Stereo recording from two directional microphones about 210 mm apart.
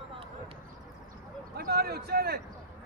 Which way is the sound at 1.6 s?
50° right (ahead or behind).